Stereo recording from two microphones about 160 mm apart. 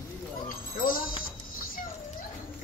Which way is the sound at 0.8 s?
65° left (ahead or behind).